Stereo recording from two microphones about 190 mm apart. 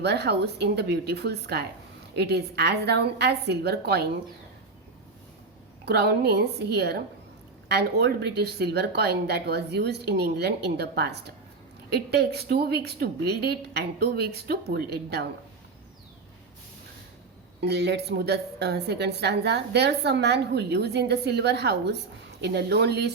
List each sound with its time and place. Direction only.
0.0 s a woman's voice: 60° right (ahead or behind)
5.8 s a woman's voice: 60° right (ahead or behind)
17.6 s a woman's voice: 60° right (ahead or behind)